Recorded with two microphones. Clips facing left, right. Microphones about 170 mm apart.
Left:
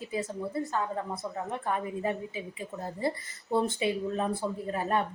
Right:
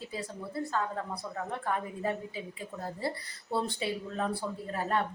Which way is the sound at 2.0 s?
20° left (ahead or behind).